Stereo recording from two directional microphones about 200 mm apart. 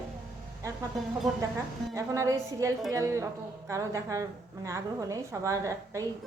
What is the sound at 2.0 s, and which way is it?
A woman's voice, 15° right (ahead or behind).